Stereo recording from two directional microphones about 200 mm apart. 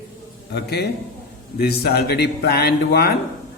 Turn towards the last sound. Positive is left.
turn(degrees=50)  # may be behind; listen again after turning